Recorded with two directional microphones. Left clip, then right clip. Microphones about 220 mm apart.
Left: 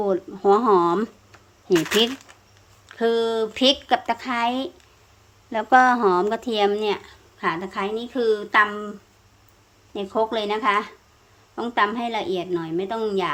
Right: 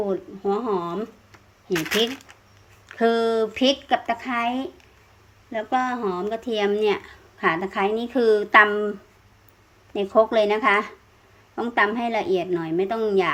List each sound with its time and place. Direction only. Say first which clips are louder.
0.0 s speech: left 4 dB; 15° left (ahead or behind)
2.9 s speech: right 1 dB; 5° right (ahead or behind)
9.9 s speech: right 5 dB; 5° right (ahead or behind)